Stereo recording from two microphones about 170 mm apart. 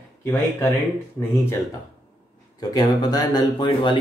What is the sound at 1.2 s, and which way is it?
Speech, 15° left (ahead or behind).